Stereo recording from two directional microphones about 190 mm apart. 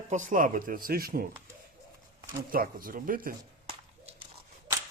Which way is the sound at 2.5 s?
50° right (ahead or behind).